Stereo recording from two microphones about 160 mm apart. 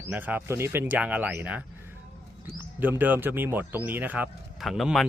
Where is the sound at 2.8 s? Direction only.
10° right (ahead or behind).